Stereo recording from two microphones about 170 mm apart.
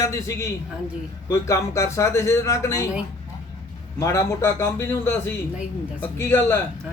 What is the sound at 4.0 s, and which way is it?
Speech, 15° left (ahead or behind).